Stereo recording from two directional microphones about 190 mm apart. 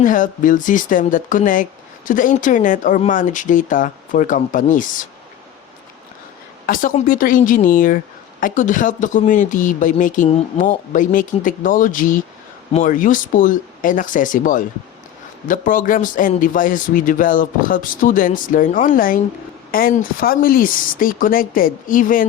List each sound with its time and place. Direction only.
0.0 s speech: 45° left (ahead or behind)
6.7 s speech: 45° left (ahead or behind)